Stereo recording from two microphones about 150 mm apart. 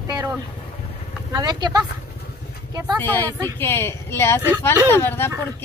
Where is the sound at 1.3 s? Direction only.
30° right (ahead or behind).